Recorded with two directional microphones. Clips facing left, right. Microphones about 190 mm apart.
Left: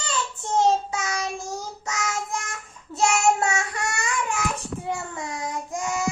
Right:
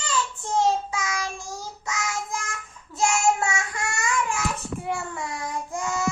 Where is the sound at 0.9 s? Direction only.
40° left (ahead or behind).